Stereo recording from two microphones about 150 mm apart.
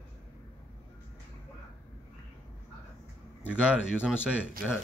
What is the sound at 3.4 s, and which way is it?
Speech, 10° right (ahead or behind).